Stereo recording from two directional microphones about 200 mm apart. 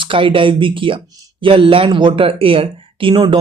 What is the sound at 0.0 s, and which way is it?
Speech, 25° right (ahead or behind).